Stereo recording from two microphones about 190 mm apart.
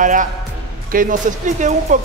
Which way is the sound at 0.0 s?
45° right (ahead or behind).